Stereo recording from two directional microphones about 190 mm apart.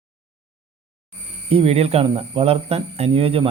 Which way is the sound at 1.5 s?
30° right (ahead or behind).